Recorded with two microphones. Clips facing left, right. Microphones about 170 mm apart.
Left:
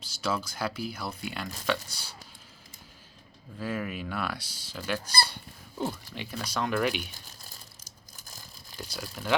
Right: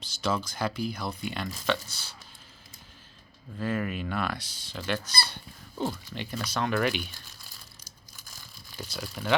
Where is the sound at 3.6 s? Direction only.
5° left (ahead or behind).